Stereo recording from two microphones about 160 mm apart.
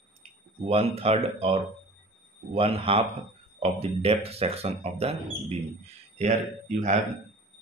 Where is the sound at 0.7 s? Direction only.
40° right (ahead or behind).